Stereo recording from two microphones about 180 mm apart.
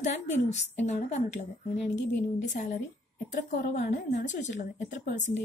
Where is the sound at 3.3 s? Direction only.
40° left (ahead or behind).